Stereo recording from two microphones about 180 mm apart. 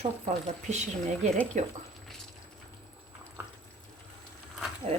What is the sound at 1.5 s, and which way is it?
Speech, 45° right (ahead or behind).